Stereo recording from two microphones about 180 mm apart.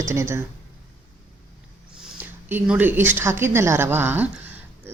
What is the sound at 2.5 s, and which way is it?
Speech, 10° right (ahead or behind).